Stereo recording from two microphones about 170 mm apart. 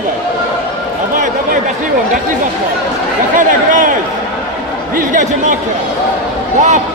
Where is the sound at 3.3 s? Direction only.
50° right (ahead or behind).